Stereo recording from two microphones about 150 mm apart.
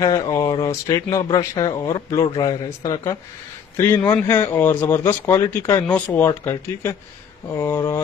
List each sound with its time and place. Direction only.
0.0 s speech: 25° left (ahead or behind)